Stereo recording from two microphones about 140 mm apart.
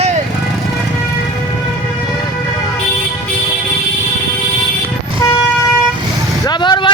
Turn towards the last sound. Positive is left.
turn(degrees=35)  # may be behind; listen again after turning